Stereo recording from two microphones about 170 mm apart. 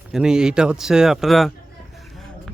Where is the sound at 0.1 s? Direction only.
5° right (ahead or behind).